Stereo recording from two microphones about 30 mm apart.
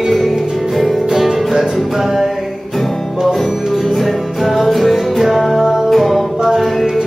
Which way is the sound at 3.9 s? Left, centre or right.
Centre.